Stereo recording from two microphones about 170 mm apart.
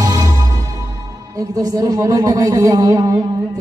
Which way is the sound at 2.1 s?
20° right (ahead or behind).